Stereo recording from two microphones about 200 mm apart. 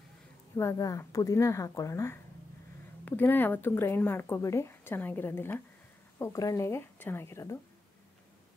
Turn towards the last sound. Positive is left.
turn(degrees=15)  # may be behind; listen again after turning